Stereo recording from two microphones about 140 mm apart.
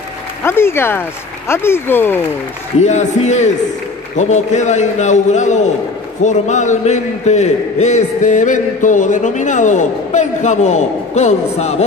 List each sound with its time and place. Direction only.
0.4 s speech: 15° left (ahead or behind)
2.8 s a man's voice: 55° left (ahead or behind)